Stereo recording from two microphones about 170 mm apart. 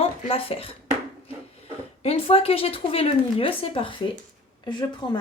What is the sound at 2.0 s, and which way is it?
A woman's voice, 35° left (ahead or behind).